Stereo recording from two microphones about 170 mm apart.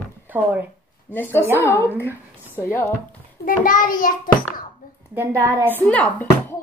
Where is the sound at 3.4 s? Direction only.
50° left (ahead or behind).